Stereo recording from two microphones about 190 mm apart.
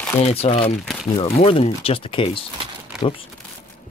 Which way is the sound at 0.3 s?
30° left (ahead or behind).